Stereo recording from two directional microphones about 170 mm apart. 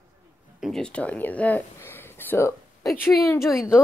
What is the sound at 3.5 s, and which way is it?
Speech, 5° right (ahead or behind).